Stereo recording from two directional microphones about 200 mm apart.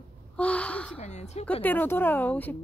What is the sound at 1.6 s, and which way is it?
Speech, 10° left (ahead or behind).